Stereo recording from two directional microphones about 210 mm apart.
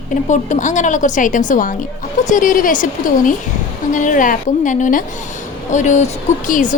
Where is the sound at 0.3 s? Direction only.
35° left (ahead or behind).